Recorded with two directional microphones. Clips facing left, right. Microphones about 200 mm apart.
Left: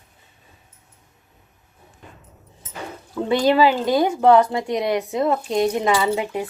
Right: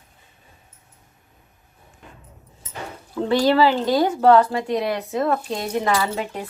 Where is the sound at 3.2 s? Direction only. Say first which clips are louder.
Even; 15° left (ahead or behind).